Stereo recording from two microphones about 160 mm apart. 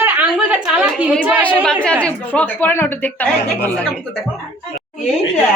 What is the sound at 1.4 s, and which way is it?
Speech, 5° left (ahead or behind).